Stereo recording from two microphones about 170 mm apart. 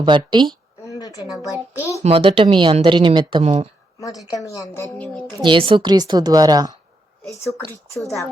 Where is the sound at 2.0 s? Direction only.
35° right (ahead or behind).